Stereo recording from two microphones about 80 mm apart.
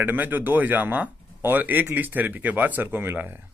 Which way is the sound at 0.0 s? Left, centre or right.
Right.